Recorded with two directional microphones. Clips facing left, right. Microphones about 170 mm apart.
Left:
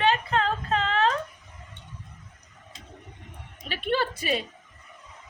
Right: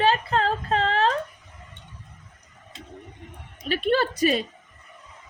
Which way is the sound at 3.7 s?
45° right (ahead or behind).